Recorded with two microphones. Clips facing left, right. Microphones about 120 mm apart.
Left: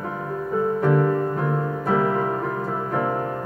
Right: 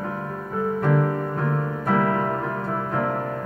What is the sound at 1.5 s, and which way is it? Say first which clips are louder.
Piano: left 1 dB; 10° left (ahead or behind).